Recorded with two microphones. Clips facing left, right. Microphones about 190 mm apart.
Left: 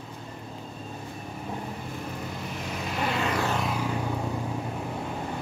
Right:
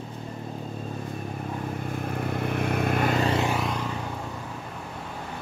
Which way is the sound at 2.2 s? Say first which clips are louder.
Right 8 dB; 60° right (ahead or behind).